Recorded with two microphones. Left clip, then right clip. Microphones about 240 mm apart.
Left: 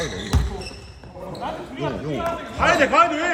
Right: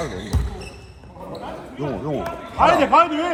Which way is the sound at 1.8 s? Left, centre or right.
Centre.